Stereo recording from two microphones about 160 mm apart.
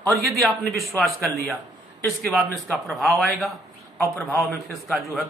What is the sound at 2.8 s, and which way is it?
Speech, centre (ahead or behind).